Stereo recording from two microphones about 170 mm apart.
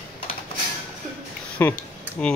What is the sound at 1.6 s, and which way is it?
Speech, 15° left (ahead or behind).